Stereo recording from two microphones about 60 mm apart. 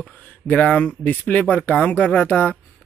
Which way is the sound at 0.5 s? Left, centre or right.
Left.